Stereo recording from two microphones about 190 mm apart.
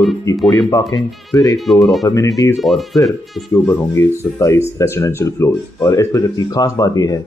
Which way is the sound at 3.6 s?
15° left (ahead or behind).